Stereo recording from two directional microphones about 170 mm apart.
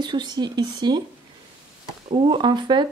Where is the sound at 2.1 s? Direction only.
30° right (ahead or behind).